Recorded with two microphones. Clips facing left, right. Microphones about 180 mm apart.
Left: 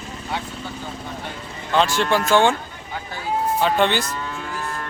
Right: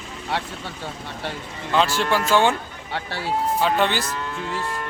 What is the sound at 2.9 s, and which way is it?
Speech, 80° right.